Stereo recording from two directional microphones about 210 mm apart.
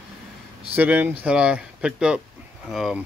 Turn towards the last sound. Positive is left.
turn(degrees=0)  # may be behind; listen again after turning